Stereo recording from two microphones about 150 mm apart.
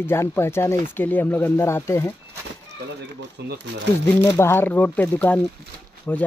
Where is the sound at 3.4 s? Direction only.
90° right.